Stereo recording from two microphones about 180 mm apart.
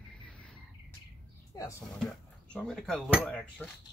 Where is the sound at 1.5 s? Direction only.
20° left (ahead or behind).